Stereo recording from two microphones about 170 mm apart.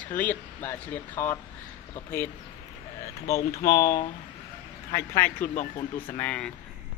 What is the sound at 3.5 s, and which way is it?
Speech, 15° left (ahead or behind).